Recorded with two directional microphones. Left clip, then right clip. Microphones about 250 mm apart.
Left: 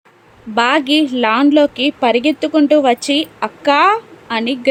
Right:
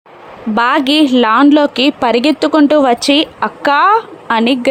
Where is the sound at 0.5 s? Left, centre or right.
Centre.